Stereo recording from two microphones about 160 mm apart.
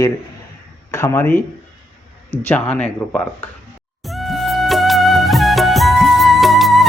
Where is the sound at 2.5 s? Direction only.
10° left (ahead or behind).